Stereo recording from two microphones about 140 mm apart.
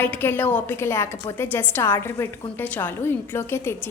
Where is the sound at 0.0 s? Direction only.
15° left (ahead or behind).